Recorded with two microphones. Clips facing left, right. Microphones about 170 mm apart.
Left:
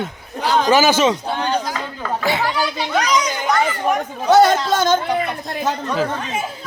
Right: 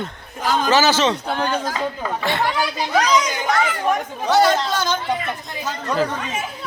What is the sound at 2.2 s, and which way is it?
Chatter, 5° left (ahead or behind).